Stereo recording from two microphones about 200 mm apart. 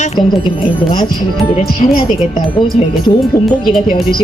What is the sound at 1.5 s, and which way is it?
Speech, 30° left (ahead or behind).